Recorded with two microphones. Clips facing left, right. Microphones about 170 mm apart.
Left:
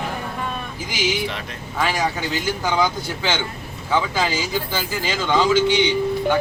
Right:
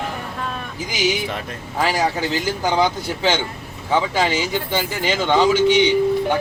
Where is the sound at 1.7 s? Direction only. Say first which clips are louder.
Right 2 dB; 30° right (ahead or behind).